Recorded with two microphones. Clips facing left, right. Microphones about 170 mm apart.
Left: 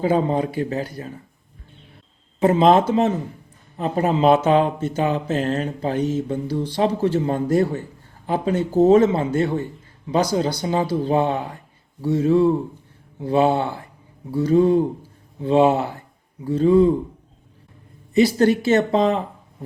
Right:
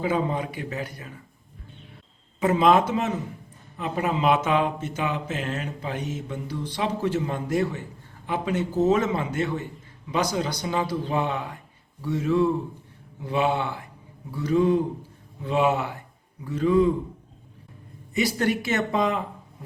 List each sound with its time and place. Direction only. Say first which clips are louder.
0.0 s speech: left 6 dB; 35° left (ahead or behind)
2.4 s speech: left 4 dB; 30° left (ahead or behind)
18.1 s speech: left 8 dB; 30° left (ahead or behind)